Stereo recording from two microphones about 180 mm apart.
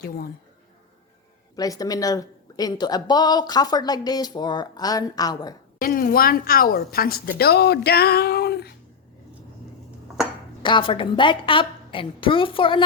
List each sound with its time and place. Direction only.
1.5 s a woman's voice: 20° left (ahead or behind)
5.8 s a woman's voice: 50° left (ahead or behind)
10.6 s a woman's voice: 25° left (ahead or behind)